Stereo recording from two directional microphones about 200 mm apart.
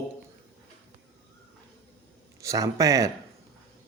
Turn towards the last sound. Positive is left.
turn(degrees=-15)  # may be behind; listen again after turning